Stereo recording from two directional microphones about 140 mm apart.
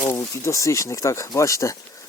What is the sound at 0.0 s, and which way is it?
Speech, 20° left (ahead or behind).